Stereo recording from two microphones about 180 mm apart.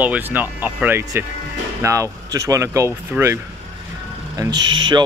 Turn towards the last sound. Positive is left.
turn(degrees=-25)  # may be behind; listen again after turning